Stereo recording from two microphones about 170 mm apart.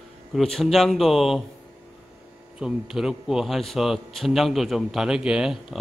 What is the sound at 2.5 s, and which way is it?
A man's voice, 5° right (ahead or behind).